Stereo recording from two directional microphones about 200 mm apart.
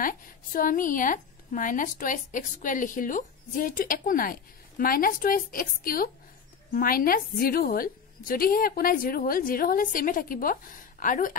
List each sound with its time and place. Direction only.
0.0 s a woman's voice: 45° left (ahead or behind)